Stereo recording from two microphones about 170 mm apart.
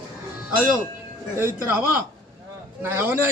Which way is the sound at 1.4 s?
15° right (ahead or behind).